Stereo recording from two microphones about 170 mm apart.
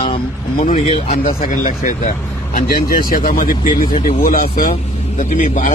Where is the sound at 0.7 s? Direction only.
35° left (ahead or behind).